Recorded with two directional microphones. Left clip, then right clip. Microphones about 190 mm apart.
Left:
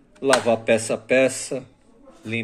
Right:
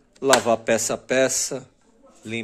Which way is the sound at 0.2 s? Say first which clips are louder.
Even; 35° right (ahead or behind).